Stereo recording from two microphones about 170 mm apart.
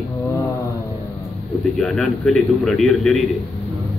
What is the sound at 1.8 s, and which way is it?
A man's voice, 5° left (ahead or behind).